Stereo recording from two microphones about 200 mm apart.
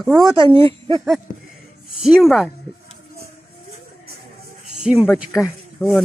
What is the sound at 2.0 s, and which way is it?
Speech, centre (ahead or behind).